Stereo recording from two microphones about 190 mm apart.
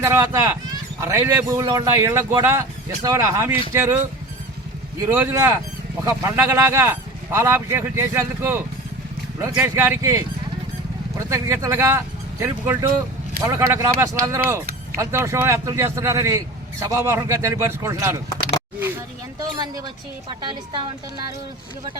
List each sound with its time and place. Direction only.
0.0 s speech: 15° right (ahead or behind)
5.1 s speech: 10° right (ahead or behind)
11.3 s speech: 15° right (ahead or behind)
19.5 s a woman's voice: 20° right (ahead or behind)